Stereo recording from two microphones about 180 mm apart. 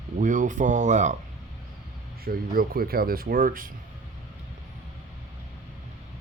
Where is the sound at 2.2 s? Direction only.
55° right (ahead or behind).